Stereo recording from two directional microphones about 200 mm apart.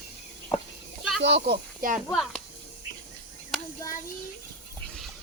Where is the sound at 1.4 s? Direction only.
50° right (ahead or behind).